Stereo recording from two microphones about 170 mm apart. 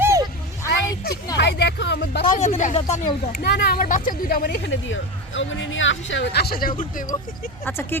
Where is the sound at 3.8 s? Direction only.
50° left (ahead or behind).